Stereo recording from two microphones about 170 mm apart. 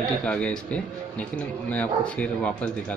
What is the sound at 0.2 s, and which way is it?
Speech, 5° left (ahead or behind).